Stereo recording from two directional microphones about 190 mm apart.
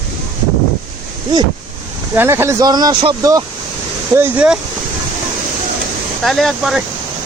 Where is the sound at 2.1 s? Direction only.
10° right (ahead or behind).